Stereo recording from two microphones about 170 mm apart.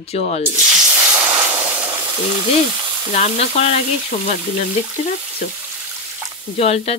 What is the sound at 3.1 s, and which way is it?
Speech, 40° left (ahead or behind).